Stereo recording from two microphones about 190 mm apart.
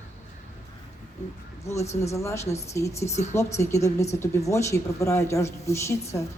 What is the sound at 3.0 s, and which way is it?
Speech, 35° left (ahead or behind).